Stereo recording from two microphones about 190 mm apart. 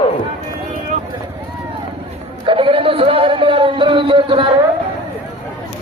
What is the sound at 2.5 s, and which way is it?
Speech, 30° right (ahead or behind).